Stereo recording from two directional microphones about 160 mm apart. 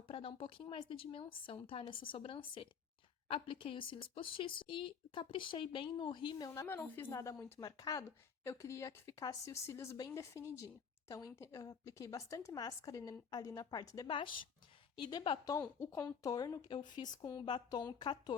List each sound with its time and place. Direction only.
0.1 s a woman's voice: 35° left (ahead or behind)
15.5 s a woman's voice: 20° left (ahead or behind)